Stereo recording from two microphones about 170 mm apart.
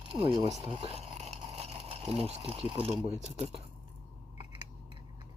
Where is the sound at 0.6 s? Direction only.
35° right (ahead or behind).